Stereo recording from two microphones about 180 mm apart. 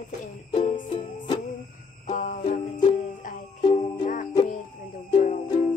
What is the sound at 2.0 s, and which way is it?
Music, 45° left (ahead or behind).